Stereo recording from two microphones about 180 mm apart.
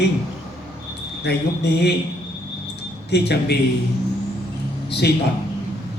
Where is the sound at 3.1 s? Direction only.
65° left (ahead or behind).